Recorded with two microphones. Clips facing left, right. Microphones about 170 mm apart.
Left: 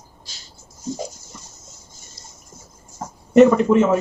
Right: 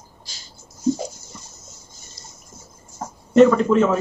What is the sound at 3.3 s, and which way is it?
Speech, 15° left (ahead or behind).